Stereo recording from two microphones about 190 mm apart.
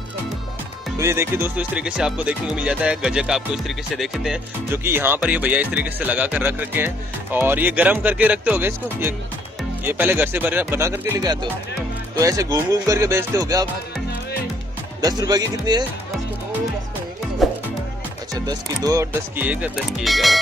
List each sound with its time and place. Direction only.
0.9 s speech: 15° right (ahead or behind)
15.0 s speech: 20° right (ahead or behind)
17.4 s music: centre (ahead or behind)
18.3 s speech: 20° right (ahead or behind); by 20.3 s centre (ahead or behind)